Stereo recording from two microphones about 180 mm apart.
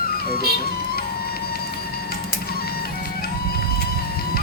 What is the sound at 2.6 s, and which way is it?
Printer, 60° left (ahead or behind).